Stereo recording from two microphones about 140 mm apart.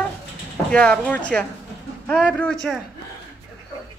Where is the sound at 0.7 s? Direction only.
5° left (ahead or behind).